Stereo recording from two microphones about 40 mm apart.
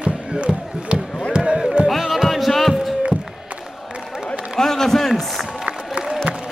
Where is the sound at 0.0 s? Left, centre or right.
Right.